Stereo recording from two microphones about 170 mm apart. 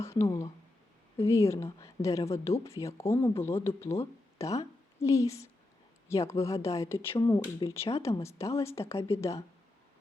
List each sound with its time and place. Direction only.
0.0 s speech: 15° left (ahead or behind)